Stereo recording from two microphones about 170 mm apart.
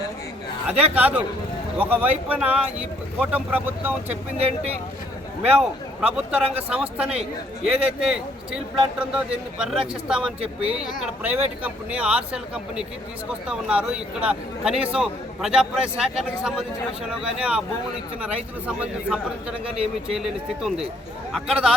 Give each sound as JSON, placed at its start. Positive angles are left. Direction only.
{"t": 0.7, "sound": "speech", "side_deg": -35}
{"t": 0.9, "sound": "speech", "side_deg": -10}
{"t": 4.4, "sound": "speech", "side_deg": -35}
{"t": 5.5, "sound": "a man's voice", "side_deg": -5}
{"t": 19.0, "sound": "a man's voice", "side_deg": -5}